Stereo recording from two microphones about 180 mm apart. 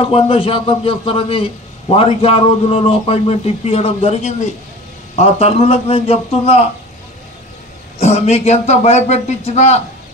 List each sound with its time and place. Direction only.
0.1 s a man's voice: 30° left (ahead or behind)
8.0 s a man's voice: 35° left (ahead or behind)